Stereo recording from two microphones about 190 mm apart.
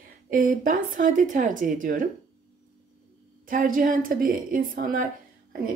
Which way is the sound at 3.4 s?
45° right (ahead or behind).